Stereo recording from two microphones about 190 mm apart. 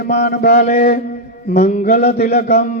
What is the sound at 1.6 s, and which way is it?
Mantra, 40° left (ahead or behind).